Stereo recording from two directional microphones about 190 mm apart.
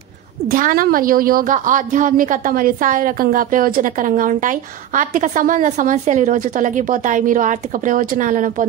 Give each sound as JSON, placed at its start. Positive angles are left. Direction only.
{"t": 0.5, "sound": "a woman's voice", "side_deg": -45}